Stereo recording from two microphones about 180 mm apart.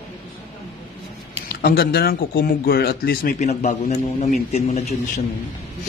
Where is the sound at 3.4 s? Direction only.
35° left (ahead or behind).